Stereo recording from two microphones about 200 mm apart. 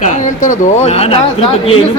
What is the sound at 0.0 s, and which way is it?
Speech, 40° left (ahead or behind).